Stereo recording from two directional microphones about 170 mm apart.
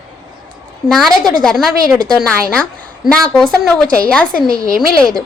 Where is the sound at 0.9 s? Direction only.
Centre (ahead or behind).